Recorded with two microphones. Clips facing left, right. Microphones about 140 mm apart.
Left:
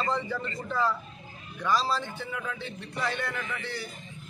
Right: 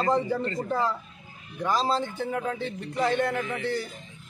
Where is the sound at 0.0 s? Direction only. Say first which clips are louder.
Right 6 dB; 50° right (ahead or behind).